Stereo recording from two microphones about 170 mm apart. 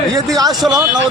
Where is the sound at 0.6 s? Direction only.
Centre (ahead or behind).